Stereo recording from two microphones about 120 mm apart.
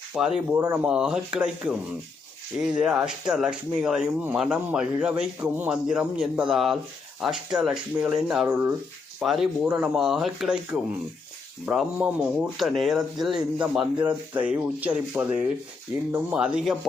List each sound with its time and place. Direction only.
0.1 s speech: 5° right (ahead or behind)
0.5 s speech: 15° right (ahead or behind)
0.9 s speech: 5° right (ahead or behind)
12.5 s speech: centre (ahead or behind)